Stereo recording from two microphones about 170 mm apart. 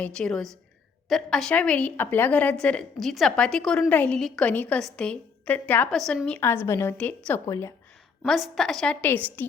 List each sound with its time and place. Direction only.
0.0 s a woman's voice: 5° left (ahead or behind)
8.2 s a woman's voice: centre (ahead or behind)